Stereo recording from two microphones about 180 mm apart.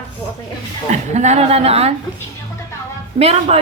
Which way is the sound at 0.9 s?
40° right (ahead or behind).